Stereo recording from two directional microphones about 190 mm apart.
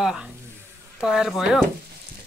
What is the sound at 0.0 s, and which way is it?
A woman's voice, 5° right (ahead or behind).